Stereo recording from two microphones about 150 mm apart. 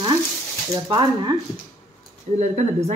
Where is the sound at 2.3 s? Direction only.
50° right (ahead or behind).